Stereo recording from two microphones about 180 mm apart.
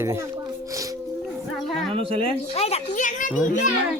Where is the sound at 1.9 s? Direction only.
30° right (ahead or behind).